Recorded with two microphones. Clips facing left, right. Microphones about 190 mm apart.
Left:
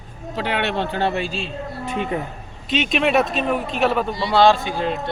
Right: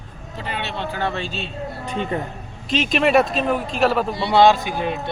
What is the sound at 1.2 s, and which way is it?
Speech, centre (ahead or behind).